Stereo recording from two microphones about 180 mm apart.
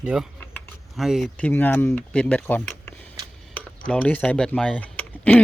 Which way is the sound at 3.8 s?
5° left (ahead or behind).